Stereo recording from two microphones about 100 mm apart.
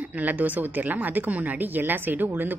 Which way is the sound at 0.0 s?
15° right (ahead or behind).